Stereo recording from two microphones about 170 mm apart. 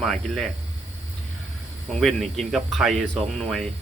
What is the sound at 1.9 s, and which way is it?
A man's voice, centre (ahead or behind).